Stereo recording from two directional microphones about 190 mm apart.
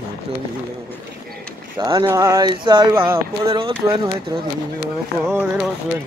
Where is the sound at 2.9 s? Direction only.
10° right (ahead or behind).